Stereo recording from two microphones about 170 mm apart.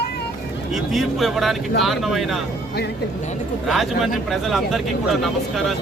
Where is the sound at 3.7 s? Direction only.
Centre (ahead or behind).